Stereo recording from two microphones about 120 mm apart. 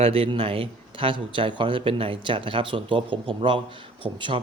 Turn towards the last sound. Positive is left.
turn(degrees=-45)  # may be behind; listen again after turning